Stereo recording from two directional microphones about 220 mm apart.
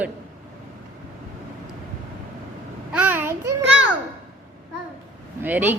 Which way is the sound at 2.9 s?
5° right (ahead or behind).